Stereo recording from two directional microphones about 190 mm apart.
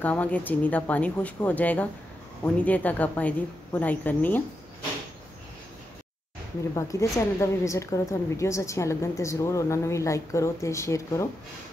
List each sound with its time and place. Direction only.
0.0 s a woman's voice: 10° left (ahead or behind)
6.7 s a woman's voice: 15° left (ahead or behind)